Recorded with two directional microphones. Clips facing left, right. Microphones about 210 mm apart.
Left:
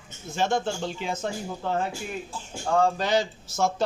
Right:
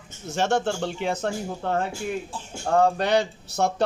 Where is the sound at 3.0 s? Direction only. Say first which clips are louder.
Right 2 dB; 60° right (ahead or behind).